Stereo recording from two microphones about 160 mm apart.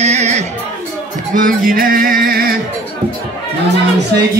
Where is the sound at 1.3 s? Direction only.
60° right (ahead or behind).